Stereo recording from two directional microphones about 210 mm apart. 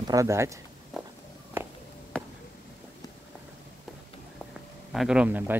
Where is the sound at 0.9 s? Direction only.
Centre (ahead or behind).